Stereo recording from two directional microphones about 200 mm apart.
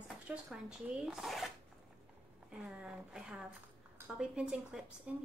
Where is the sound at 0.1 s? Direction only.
5° right (ahead or behind).